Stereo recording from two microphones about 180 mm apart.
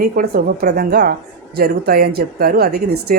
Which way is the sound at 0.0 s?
55° right (ahead or behind).